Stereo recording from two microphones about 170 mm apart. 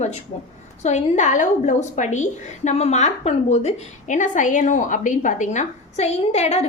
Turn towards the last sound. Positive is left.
turn(degrees=40)  # may be behind; listen again after turning